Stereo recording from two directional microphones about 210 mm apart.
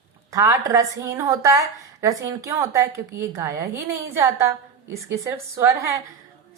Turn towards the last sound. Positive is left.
turn(degrees=-15)  # may be behind; listen again after turning